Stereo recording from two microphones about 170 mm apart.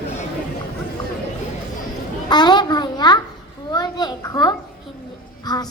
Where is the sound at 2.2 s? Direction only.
25° left (ahead or behind).